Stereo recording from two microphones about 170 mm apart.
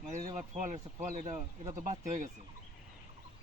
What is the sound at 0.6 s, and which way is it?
Speech, 50° right (ahead or behind).